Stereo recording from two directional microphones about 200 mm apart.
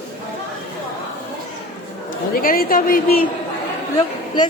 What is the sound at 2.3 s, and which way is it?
Speech, 45° left (ahead or behind).